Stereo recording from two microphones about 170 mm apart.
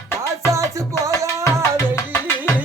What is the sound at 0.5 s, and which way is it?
Music, 20° right (ahead or behind).